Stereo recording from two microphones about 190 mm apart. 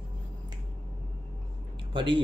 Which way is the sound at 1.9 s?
25° right (ahead or behind).